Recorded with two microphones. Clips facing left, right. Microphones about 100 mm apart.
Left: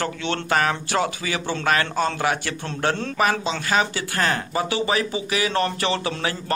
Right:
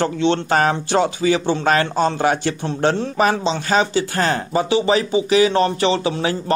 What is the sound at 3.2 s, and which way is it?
Speech, 25° right (ahead or behind).